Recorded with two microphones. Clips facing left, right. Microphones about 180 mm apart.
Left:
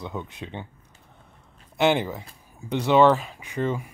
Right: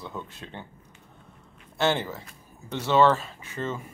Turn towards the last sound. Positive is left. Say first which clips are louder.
# left 5 dB
turn(degrees=15)  # may be behind; listen again after turning